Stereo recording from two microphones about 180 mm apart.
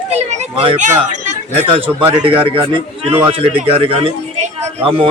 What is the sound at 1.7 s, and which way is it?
A man's voice, 30° right (ahead or behind).